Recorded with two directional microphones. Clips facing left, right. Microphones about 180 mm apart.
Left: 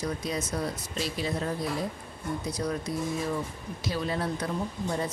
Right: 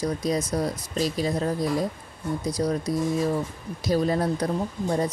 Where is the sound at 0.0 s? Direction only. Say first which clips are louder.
Right 6 dB; 40° right (ahead or behind).